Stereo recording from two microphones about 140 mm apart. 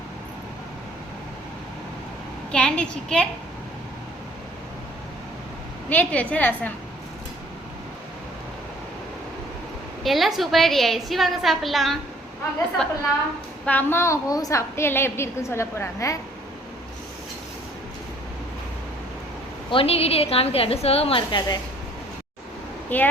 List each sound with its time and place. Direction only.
2.5 s a woman's voice: 5° left (ahead or behind)
5.9 s a woman's voice: 10° left (ahead or behind)
10.0 s a woman's voice: centre (ahead or behind); by 16.1 s 20° left (ahead or behind)
19.7 s a woman's voice: 45° left (ahead or behind)
22.9 s a woman's voice: 15° left (ahead or behind)